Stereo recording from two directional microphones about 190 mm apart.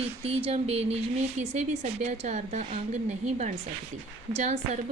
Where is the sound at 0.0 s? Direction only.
30° right (ahead or behind).